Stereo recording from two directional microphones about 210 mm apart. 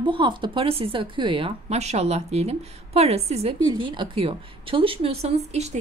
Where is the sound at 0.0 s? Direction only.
25° right (ahead or behind).